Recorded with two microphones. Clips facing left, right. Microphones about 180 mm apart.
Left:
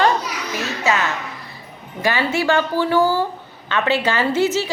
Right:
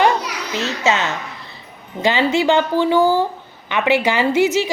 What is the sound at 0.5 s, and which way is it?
A woman's voice, 25° right (ahead or behind).